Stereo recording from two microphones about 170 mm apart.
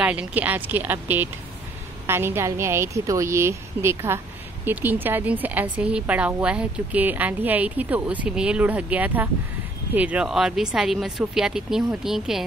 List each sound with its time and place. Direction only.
0.0 s a woman's voice: 10° right (ahead or behind)